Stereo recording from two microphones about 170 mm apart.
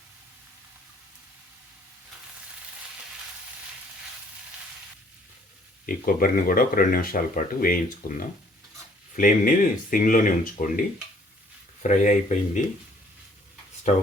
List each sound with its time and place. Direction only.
5.8 s speech: 55° left (ahead or behind)
11.8 s speech: 45° left (ahead or behind)